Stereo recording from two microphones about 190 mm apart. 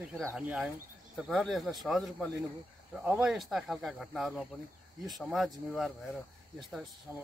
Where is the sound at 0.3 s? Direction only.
5° right (ahead or behind).